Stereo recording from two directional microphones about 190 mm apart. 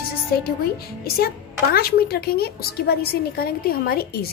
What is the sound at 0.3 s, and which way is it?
A woman's voice, 55° left (ahead or behind).